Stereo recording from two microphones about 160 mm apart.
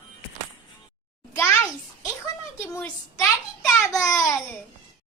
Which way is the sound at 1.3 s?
15° left (ahead or behind).